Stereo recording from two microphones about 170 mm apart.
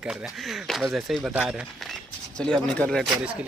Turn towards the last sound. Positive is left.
turn(degrees=0)  # may be behind; listen again after turning